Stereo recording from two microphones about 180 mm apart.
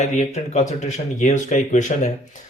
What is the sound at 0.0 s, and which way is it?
Speech, 40° left (ahead or behind).